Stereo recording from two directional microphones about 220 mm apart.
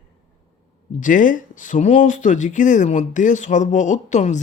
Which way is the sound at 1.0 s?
35° left (ahead or behind).